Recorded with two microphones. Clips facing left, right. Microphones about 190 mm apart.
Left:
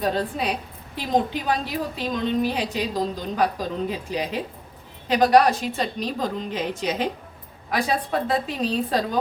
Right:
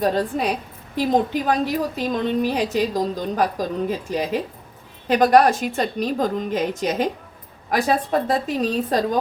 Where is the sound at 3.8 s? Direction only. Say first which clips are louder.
Right 3 dB; 45° right (ahead or behind).